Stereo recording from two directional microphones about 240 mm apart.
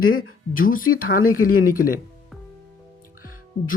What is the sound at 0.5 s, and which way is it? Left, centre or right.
Speech, left.